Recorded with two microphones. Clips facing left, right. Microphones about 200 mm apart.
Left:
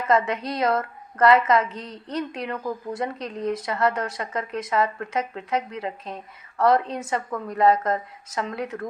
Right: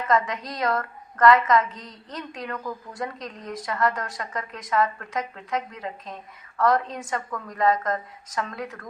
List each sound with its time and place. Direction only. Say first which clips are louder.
0.1 s a woman's voice: left 3 dB; 25° left (ahead or behind)